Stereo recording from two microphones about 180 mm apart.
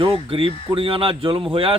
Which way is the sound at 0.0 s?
30° right (ahead or behind).